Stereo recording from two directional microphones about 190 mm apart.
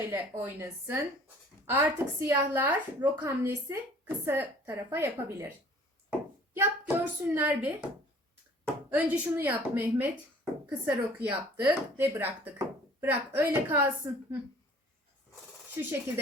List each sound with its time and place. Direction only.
0.1 s a woman's voice: 10° right (ahead or behind)
6.1 s a sound: 10° right (ahead or behind)
6.8 s a woman's voice: 10° right (ahead or behind)
15.7 s a woman's voice: 10° right (ahead or behind)